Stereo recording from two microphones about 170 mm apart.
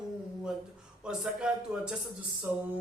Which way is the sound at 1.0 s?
5° right (ahead or behind).